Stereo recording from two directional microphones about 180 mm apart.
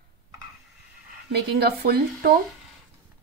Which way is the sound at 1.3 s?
60° right (ahead or behind).